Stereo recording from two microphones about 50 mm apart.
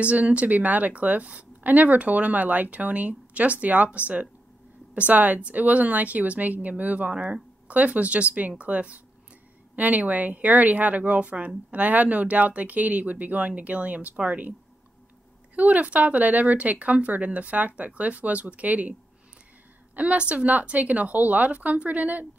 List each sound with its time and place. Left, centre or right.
0.0 s speech: right
15.5 s speech: right
20.0 s speech: right